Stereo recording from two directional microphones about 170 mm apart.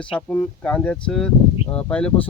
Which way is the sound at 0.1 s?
5° left (ahead or behind).